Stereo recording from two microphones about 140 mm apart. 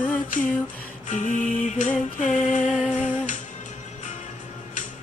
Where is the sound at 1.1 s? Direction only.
65° left (ahead or behind).